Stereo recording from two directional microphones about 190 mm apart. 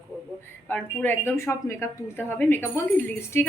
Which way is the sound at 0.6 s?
10° left (ahead or behind).